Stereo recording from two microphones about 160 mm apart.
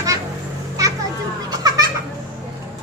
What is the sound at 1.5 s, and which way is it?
Children playing, 25° right (ahead or behind).